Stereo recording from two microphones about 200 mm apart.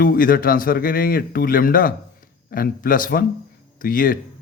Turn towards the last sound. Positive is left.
turn(degrees=45)  # may be behind; listen again after turning